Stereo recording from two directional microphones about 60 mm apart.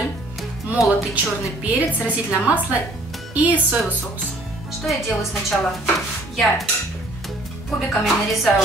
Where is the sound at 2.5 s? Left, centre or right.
Right.